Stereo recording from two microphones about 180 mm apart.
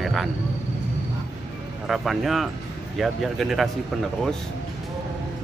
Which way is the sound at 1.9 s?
Centre (ahead or behind).